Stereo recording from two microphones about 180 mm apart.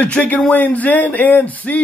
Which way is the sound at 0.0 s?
10° left (ahead or behind).